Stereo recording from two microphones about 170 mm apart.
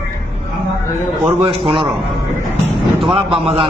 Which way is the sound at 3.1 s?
30° right (ahead or behind).